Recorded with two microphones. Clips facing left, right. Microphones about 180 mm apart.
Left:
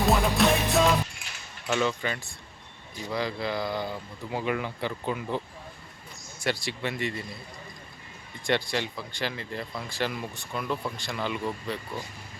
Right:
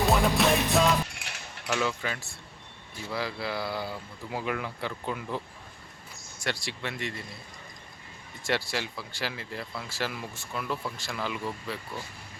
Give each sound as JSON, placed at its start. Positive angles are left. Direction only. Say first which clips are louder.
{"t": 0.0, "sound": "music", "louder": "left 1 dB", "side_deg": 0}
{"t": 1.1, "sound": "a sound", "louder": "right 3 dB", "side_deg": -70}
{"t": 1.6, "sound": "speech", "louder": "left 3 dB", "side_deg": -5}
{"t": 6.4, "sound": "speech", "louder": "left 4 dB", "side_deg": 0}
{"t": 8.4, "sound": "speech", "louder": "left 3 dB", "side_deg": -5}